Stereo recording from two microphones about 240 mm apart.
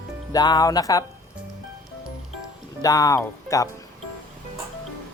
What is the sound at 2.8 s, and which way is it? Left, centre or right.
Speech, centre.